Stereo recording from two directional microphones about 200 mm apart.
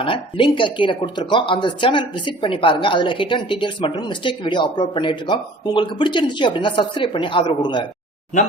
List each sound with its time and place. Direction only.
0.0 s speech: 25° left (ahead or behind)
8.3 s speech: 35° left (ahead or behind)